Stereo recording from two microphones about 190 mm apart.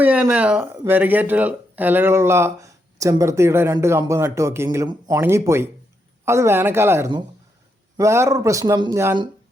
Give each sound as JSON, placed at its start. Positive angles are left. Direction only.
{"t": 0.0, "sound": "speech", "side_deg": -10}